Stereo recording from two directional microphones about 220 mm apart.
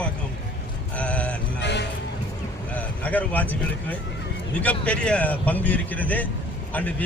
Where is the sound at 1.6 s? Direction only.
50° left (ahead or behind).